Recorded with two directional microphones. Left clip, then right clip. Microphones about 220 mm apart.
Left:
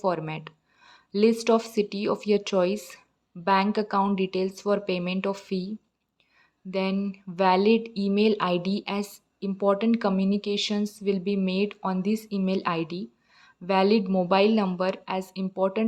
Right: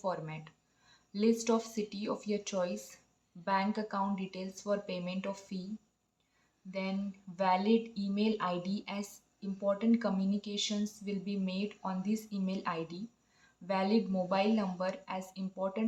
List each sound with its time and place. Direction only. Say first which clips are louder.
0.0 s speech: left 10 dB; 40° left (ahead or behind)
6.7 s speech: left 11 dB; 45° left (ahead or behind)